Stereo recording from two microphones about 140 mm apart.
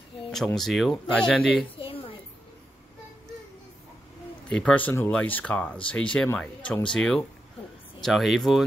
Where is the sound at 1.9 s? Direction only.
40° left (ahead or behind).